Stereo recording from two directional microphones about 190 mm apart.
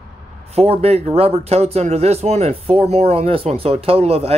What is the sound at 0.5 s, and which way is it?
Speech, 30° right (ahead or behind).